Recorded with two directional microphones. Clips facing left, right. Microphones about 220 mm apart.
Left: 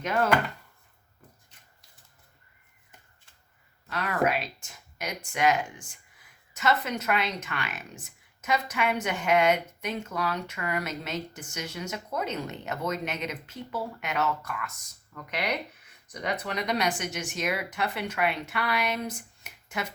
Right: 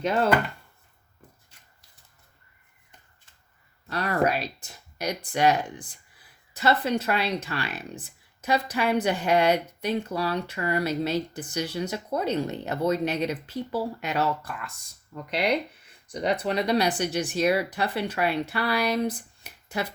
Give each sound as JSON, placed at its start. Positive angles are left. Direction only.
{"t": 0.0, "sound": "speech", "side_deg": -30}
{"t": 3.8, "sound": "speech", "side_deg": -35}